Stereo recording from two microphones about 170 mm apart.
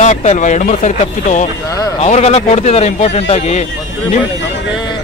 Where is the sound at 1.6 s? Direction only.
20° left (ahead or behind).